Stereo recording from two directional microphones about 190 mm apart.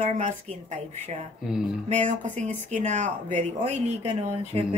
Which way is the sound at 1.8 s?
40° right (ahead or behind).